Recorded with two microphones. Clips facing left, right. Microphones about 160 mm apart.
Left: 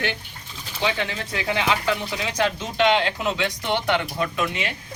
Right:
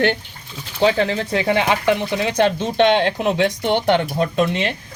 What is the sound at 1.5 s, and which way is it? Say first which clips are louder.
Speech: right 5 dB; 25° right (ahead or behind).